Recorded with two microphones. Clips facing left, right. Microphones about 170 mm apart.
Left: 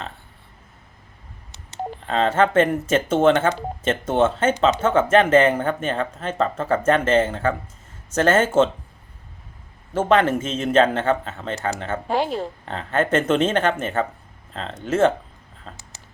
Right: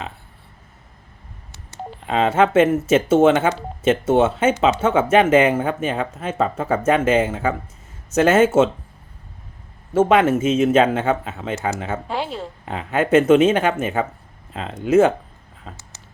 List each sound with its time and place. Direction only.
2.0 s speech: 10° right (ahead or behind)
9.9 s speech: 5° right (ahead or behind)
12.0 s speech: 45° left (ahead or behind)
12.6 s speech: 10° right (ahead or behind)